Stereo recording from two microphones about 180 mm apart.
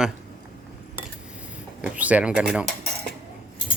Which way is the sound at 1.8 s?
10° right (ahead or behind).